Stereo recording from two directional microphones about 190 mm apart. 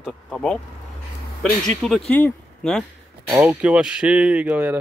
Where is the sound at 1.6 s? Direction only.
5° left (ahead or behind).